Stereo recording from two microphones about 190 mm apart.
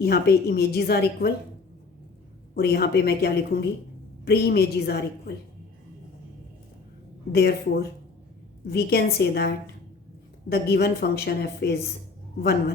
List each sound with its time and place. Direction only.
0.0 s a woman's voice: 55° left (ahead or behind)
2.6 s a woman's voice: 55° left (ahead or behind)
7.3 s a woman's voice: 55° left (ahead or behind)
10.5 s a woman's voice: 55° left (ahead or behind)